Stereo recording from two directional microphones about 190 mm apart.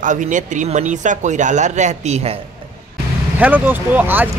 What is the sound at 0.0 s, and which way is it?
Speech, 40° right (ahead or behind).